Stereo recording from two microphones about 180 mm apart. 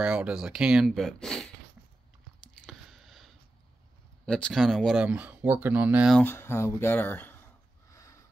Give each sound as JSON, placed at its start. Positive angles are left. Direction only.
{"t": 0.0, "sound": "speech", "side_deg": -5}
{"t": 2.6, "sound": "chewing", "side_deg": 0}
{"t": 4.3, "sound": "speech", "side_deg": 5}
{"t": 6.1, "sound": "speech", "side_deg": 10}
{"t": 7.9, "sound": "a sound", "side_deg": 15}